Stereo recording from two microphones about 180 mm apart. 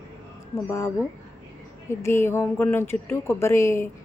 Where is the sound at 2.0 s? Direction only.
15° left (ahead or behind).